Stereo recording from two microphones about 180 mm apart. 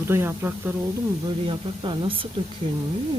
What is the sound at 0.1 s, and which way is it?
Speech, 10° right (ahead or behind).